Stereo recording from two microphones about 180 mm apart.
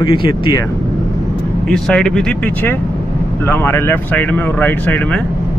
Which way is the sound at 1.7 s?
5° left (ahead or behind).